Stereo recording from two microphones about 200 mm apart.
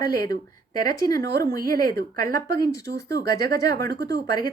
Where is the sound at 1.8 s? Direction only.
45° right (ahead or behind).